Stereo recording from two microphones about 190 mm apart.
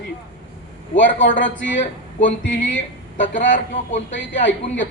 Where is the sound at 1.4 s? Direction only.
75° left (ahead or behind).